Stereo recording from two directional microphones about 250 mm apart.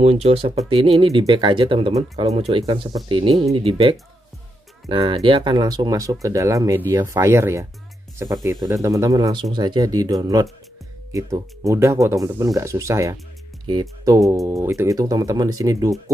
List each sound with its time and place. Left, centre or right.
0.0 s speech: right